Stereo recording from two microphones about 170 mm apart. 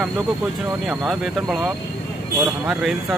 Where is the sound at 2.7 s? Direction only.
Centre (ahead or behind).